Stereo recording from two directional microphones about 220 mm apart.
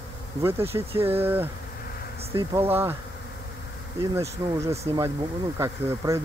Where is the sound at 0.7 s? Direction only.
15° right (ahead or behind).